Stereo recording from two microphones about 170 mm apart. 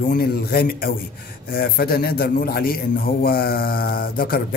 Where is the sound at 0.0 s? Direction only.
60° left (ahead or behind).